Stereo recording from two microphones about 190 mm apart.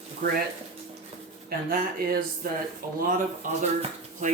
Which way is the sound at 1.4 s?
50° right (ahead or behind).